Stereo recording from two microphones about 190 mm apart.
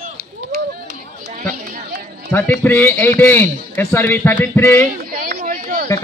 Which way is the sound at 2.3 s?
10° left (ahead or behind).